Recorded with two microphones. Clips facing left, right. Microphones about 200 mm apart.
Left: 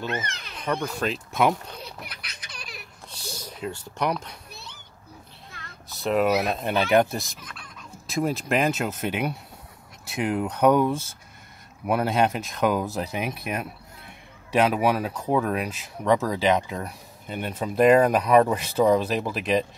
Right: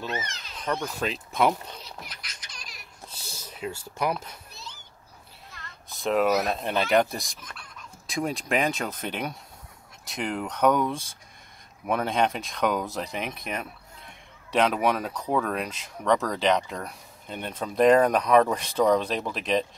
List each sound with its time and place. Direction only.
0.3 s speech: 60° left (ahead or behind)
0.8 s speech: centre (ahead or behind)
1.9 s baby laughter: 60° left (ahead or behind)
3.7 s speech: 5° right (ahead or behind)
4.5 s children playing: 60° left (ahead or behind)
6.0 s speech: 5° left (ahead or behind)